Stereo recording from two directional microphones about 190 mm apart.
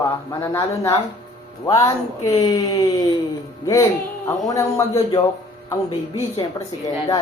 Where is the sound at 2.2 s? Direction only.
30° left (ahead or behind).